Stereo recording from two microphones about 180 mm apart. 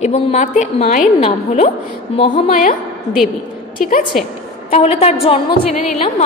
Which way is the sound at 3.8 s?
50° left (ahead or behind).